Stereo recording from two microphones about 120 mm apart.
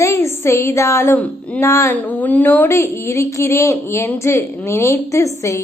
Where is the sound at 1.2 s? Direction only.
10° left (ahead or behind).